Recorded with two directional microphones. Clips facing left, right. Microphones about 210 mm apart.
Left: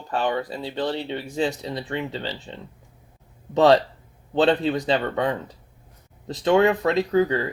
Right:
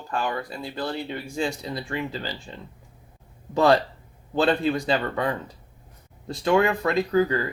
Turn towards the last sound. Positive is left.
turn(degrees=25)  # may be behind; listen again after turning